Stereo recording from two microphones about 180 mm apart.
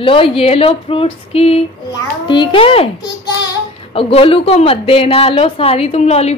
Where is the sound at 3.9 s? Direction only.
30° left (ahead or behind).